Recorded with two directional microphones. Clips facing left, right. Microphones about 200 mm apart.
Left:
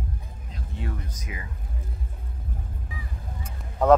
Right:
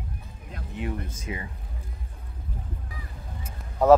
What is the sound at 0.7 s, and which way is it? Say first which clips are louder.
Speech: right 4 dB; 15° right (ahead or behind).